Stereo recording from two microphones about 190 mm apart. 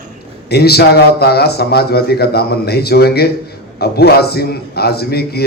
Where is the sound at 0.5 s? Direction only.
55° left (ahead or behind).